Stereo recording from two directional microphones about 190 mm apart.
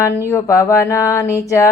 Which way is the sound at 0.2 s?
15° left (ahead or behind).